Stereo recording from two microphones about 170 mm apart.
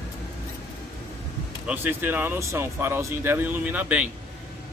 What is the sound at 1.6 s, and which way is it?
Speech, 10° right (ahead or behind).